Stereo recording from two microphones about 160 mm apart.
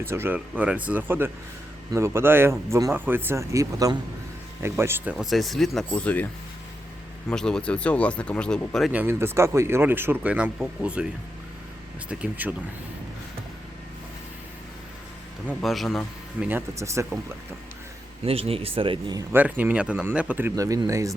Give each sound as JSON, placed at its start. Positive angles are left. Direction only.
{"t": 0.0, "sound": "speech", "side_deg": -15}
{"t": 5.1, "sound": "speech", "side_deg": 0}
{"t": 7.3, "sound": "speech", "side_deg": 5}
{"t": 8.9, "sound": "speech", "side_deg": -10}
{"t": 12.0, "sound": "speech", "side_deg": -5}
{"t": 15.6, "sound": "speech", "side_deg": 0}
{"t": 16.5, "sound": "speech", "side_deg": -15}
{"t": 18.3, "sound": "speech", "side_deg": -35}
{"t": 19.3, "sound": "speech", "side_deg": -10}